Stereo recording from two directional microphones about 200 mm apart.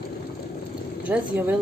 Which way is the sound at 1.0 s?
5° right (ahead or behind).